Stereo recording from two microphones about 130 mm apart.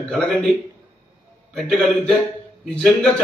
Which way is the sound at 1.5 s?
5° left (ahead or behind).